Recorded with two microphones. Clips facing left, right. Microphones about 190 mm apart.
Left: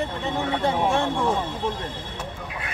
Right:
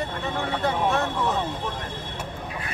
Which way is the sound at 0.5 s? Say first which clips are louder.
Left 1 dB; 30° left (ahead or behind).